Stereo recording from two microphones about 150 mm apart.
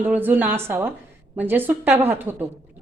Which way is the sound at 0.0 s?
10° right (ahead or behind).